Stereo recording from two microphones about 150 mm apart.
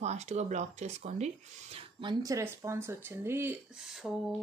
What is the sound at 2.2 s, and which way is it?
Speech, 20° right (ahead or behind).